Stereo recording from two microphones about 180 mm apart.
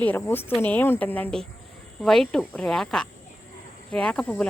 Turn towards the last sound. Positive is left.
turn(degrees=5)  # may be behind; listen again after turning